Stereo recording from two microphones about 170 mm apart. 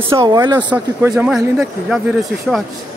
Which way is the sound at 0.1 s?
25° right (ahead or behind).